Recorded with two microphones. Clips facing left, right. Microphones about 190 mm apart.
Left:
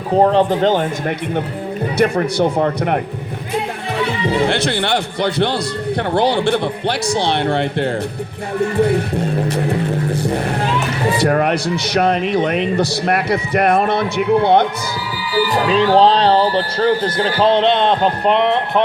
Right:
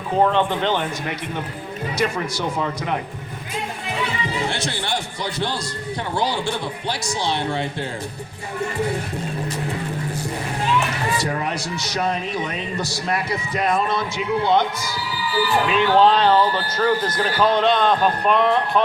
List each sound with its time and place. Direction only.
0.1 s speech: 35° left (ahead or behind)
2.0 s a man's voice: 60° left (ahead or behind)
4.3 s a man's voice: 60° left (ahead or behind)
11.2 s a man's voice: 65° left (ahead or behind)
15.6 s speech: 35° left (ahead or behind)